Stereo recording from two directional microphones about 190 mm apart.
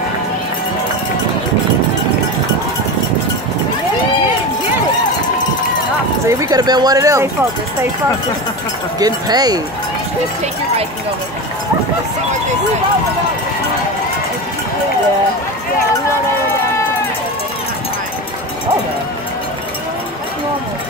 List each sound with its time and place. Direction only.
6.2 s speech: 20° right (ahead or behind)
9.0 s speech: 20° right (ahead or behind)